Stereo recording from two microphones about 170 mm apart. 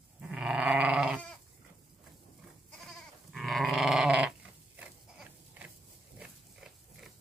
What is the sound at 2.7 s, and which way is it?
Goat, centre (ahead or behind).